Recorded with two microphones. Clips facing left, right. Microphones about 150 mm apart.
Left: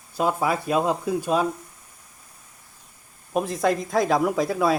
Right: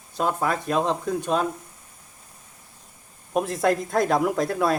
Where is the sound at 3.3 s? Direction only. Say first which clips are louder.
Even; centre (ahead or behind).